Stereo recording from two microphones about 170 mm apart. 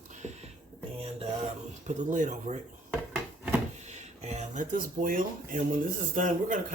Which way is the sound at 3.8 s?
40° right (ahead or behind).